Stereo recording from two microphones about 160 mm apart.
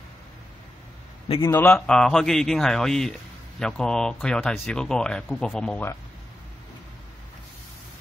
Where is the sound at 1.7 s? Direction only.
5° left (ahead or behind).